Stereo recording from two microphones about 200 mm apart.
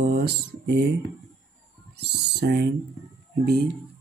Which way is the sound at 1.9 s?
55° right (ahead or behind).